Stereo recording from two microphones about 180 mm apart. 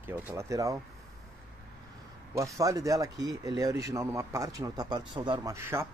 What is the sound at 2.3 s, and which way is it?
Speech, 20° right (ahead or behind).